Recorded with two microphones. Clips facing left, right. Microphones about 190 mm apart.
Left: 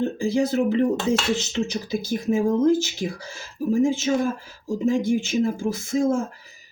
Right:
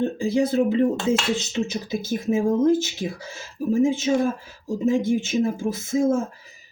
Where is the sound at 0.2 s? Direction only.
20° right (ahead or behind).